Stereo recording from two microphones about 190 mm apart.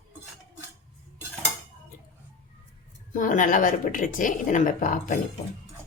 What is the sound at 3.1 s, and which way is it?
A woman's voice, 45° left (ahead or behind).